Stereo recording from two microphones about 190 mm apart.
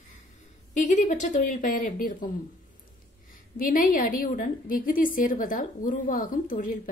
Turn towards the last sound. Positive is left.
turn(degrees=45)  # may be behind; listen again after turning